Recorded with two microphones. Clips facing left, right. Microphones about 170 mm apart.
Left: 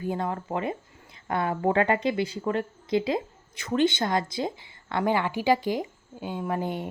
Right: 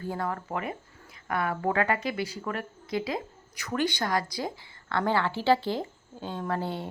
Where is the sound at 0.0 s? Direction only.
20° left (ahead or behind).